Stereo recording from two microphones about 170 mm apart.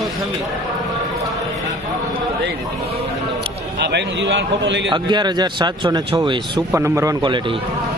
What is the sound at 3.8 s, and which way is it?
A man's voice, 90° right.